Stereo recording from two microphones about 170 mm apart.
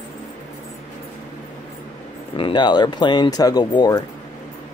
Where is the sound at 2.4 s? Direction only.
25° left (ahead or behind).